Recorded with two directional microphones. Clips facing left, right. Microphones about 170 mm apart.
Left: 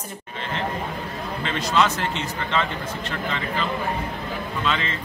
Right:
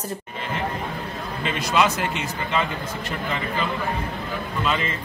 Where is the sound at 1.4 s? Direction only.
10° right (ahead or behind).